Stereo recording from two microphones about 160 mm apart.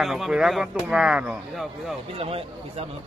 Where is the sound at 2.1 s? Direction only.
40° right (ahead or behind).